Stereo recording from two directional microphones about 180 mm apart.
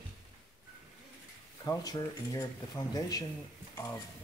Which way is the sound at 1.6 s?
20° left (ahead or behind).